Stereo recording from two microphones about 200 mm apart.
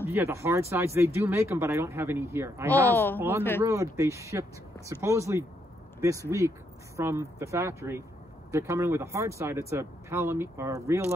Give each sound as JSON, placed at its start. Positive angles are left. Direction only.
{"t": 0.0, "sound": "speech", "side_deg": -10}